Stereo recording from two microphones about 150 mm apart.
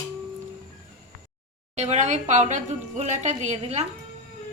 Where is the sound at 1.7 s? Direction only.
50° right (ahead or behind).